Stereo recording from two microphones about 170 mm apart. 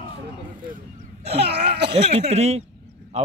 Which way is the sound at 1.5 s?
75° right (ahead or behind).